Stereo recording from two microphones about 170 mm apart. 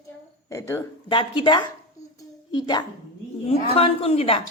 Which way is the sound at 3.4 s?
35° left (ahead or behind).